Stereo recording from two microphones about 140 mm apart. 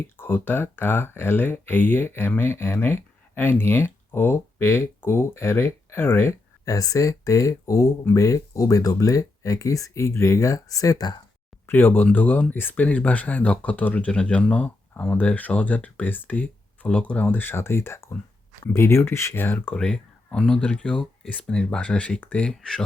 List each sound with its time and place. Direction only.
0.0 s speech: 15° left (ahead or behind)
11.6 s speech: 15° left (ahead or behind)